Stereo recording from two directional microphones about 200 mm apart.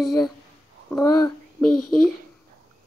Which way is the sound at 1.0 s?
15° left (ahead or behind).